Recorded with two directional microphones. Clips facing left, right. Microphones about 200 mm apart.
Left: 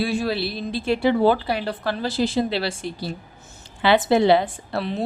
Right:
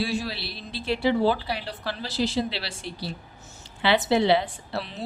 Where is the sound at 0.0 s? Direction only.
55° left (ahead or behind).